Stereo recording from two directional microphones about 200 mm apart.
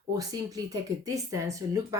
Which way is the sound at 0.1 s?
20° right (ahead or behind).